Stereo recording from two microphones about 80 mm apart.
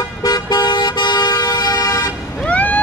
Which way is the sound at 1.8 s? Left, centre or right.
Left.